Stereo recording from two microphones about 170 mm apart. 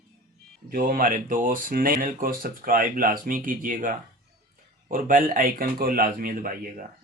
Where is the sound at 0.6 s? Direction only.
55° right (ahead or behind).